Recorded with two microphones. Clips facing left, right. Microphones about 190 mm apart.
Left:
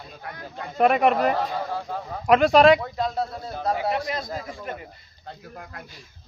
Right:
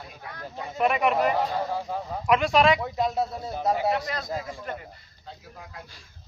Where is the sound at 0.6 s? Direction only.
45° left (ahead or behind).